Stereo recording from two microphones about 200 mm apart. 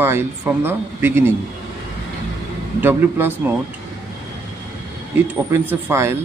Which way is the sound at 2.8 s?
10° right (ahead or behind).